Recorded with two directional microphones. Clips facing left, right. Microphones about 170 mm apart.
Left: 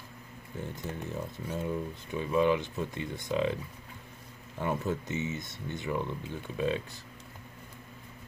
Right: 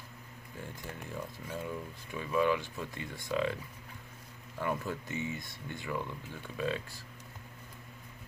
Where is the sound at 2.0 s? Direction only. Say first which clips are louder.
Left 3 dB; 25° left (ahead or behind).